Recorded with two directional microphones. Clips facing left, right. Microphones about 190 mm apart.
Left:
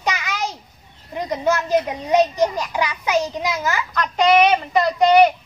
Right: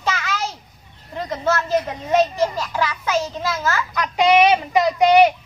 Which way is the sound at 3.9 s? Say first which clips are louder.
Even; 5° right (ahead or behind).